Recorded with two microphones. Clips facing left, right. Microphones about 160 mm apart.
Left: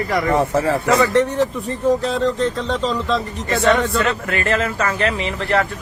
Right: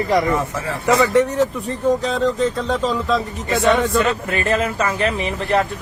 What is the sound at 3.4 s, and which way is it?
Speech, 15° right (ahead or behind).